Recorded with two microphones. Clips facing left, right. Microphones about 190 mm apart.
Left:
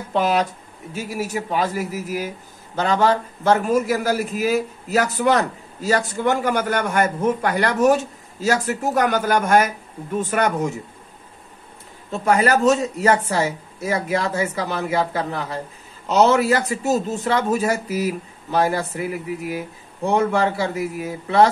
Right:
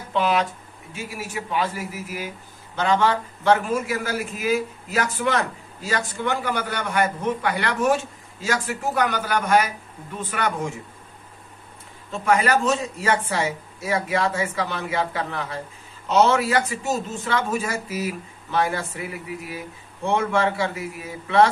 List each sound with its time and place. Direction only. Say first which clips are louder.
0.1 s speech: left 2 dB; 40° left (ahead or behind)
12.1 s speech: left 2 dB; 40° left (ahead or behind)